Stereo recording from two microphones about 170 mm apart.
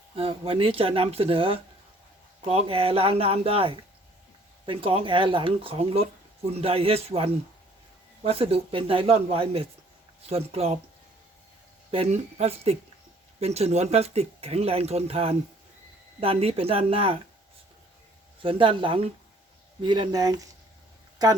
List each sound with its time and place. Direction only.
0.2 s speech: 35° right (ahead or behind)
11.9 s speech: 35° right (ahead or behind)
18.4 s speech: 30° right (ahead or behind)